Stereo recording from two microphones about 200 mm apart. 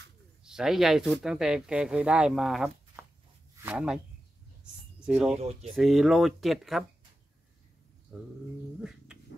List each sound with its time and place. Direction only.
0.4 s speech: 5° right (ahead or behind)
2.9 s a sound: 15° right (ahead or behind)
3.6 s speech: 5° right (ahead or behind)
5.0 s speech: 5° right (ahead or behind)
5.4 s speech: 30° right (ahead or behind)
5.8 s speech: centre (ahead or behind)
8.1 s bird: 5° right (ahead or behind)
8.8 s cat: 5° right (ahead or behind)